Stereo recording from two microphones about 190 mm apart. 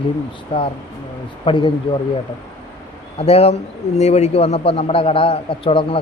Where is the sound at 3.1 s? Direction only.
30° left (ahead or behind).